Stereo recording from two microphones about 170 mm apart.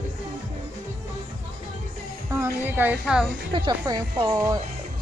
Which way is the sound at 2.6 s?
10° right (ahead or behind).